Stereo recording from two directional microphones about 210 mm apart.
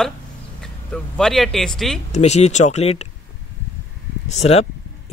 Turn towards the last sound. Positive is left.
turn(degrees=30)  # may be behind; listen again after turning